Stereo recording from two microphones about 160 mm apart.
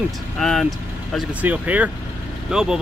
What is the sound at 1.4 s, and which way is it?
Speech, 10° right (ahead or behind).